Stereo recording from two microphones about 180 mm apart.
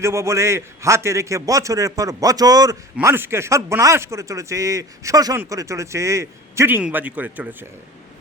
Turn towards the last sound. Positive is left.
turn(degrees=-10)  # may be behind; listen again after turning